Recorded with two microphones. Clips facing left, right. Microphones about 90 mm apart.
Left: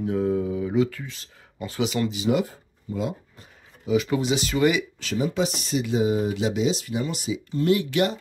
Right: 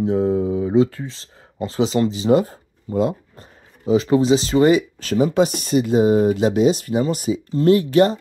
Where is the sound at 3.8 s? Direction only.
35° right (ahead or behind).